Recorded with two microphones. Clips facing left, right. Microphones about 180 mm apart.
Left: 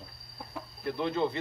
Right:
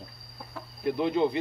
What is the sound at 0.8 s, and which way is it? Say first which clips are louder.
Speech: right 5 dB; 15° right (ahead or behind).